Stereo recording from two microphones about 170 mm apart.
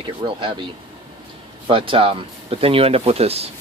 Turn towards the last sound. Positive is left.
turn(degrees=-35)  # may be behind; listen again after turning